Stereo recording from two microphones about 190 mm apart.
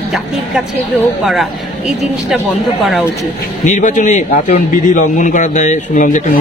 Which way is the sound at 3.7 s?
40° left (ahead or behind).